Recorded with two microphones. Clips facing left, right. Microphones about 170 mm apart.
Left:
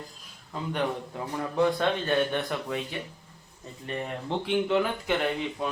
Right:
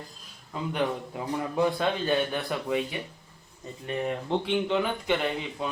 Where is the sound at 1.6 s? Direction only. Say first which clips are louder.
Left 1 dB; 5° right (ahead or behind).